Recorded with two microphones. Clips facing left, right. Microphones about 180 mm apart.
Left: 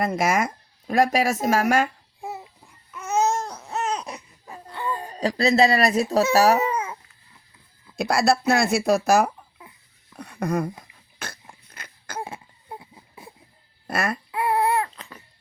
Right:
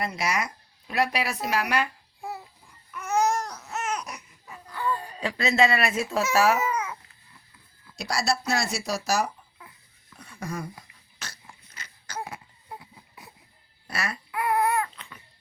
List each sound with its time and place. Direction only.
0.0 s speech: 50° left (ahead or behind)
2.2 s a sound: 25° left (ahead or behind)
2.9 s babbling: 25° left (ahead or behind)
4.9 s speech: 45° left (ahead or behind)
7.9 s speech: 55° left (ahead or behind)
11.2 s a sound: 55° left (ahead or behind)
12.2 s a sound: 25° left (ahead or behind)
13.8 s babbling: 50° left (ahead or behind)
14.3 s baby cry: 30° left (ahead or behind)